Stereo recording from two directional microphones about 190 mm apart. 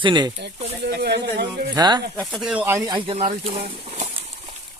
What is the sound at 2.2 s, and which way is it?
Speech, centre (ahead or behind).